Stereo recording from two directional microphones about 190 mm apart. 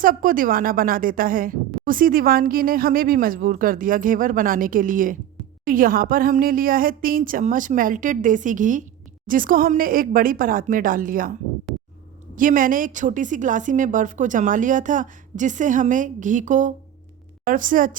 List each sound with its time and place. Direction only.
0.0 s a woman's voice: 45° right (ahead or behind)
12.4 s a woman's voice: 45° right (ahead or behind)